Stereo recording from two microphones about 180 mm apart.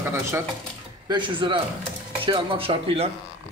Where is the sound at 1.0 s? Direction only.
25° right (ahead or behind).